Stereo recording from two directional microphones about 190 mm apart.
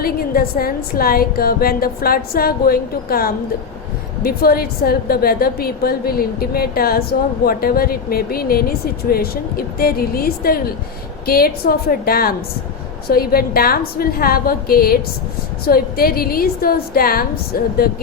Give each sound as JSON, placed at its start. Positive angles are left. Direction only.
{"t": 0.0, "sound": "a woman's voice", "side_deg": 50}